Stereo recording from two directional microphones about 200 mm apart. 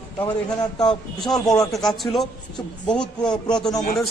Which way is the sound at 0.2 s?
20° left (ahead or behind).